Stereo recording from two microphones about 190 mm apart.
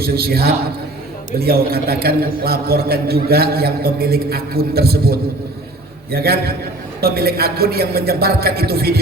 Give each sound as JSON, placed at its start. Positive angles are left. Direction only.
{"t": 0.0, "sound": "a man's voice", "side_deg": -55}